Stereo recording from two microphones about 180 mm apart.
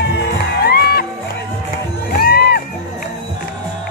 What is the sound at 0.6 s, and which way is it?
Music, 60° left (ahead or behind).